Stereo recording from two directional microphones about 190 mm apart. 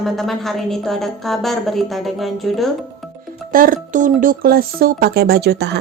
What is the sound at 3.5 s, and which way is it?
Speech, 45° right (ahead or behind).